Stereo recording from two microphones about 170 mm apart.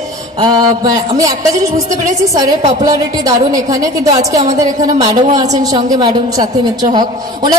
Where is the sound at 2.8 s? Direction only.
20° right (ahead or behind).